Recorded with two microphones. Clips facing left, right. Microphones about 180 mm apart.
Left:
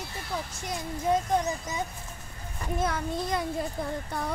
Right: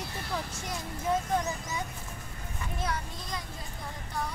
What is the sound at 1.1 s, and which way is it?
Speech, 20° left (ahead or behind).